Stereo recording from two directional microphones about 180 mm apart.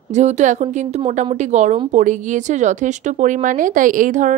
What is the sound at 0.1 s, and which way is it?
A woman's voice, 40° right (ahead or behind).